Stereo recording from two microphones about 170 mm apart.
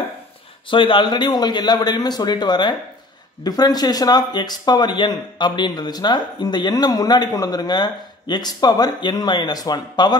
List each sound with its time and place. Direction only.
0.7 s speech: 30° left (ahead or behind)